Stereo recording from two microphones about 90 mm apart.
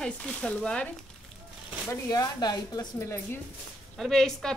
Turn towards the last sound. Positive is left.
turn(degrees=5)  # may be behind; listen again after turning